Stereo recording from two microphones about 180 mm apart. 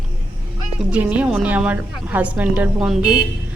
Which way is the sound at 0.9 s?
5° right (ahead or behind).